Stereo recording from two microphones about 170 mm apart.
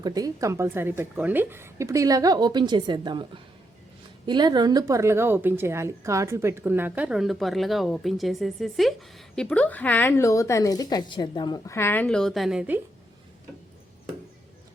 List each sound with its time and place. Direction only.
0.0 s a woman's voice: 20° right (ahead or behind)
4.3 s a woman's voice: 25° right (ahead or behind); by 12.8 s 5° right (ahead or behind)